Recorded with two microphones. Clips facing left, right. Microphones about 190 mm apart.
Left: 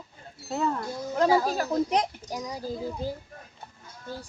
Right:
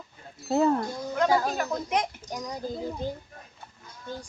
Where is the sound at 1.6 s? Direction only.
30° left (ahead or behind).